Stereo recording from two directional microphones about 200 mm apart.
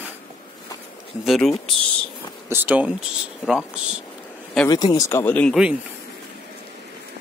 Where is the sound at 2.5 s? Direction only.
10° right (ahead or behind).